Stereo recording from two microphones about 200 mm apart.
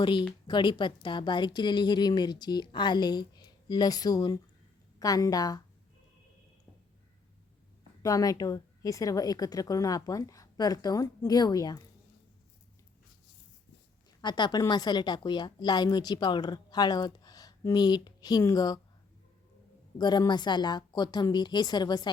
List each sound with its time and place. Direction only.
0.0 s a woman's voice: 25° left (ahead or behind)
8.0 s speech: 15° left (ahead or behind)
14.2 s a woman's voice: 20° left (ahead or behind)
20.0 s a woman's voice: 20° left (ahead or behind)